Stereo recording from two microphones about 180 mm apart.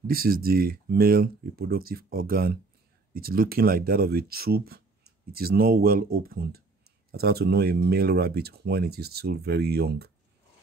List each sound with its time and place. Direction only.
0.0 s speech: 55° right (ahead or behind)